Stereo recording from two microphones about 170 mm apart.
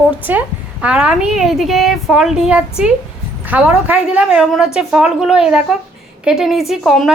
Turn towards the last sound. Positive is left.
turn(degrees=0)  # may be behind; listen again after turning